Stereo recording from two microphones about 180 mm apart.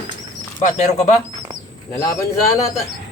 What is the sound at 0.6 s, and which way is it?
Speech, 40° left (ahead or behind).